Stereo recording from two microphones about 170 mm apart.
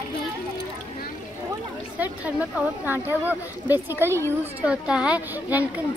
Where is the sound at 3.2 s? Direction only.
10° right (ahead or behind).